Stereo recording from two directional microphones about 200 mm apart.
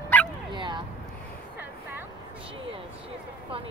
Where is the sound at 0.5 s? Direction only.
25° right (ahead or behind).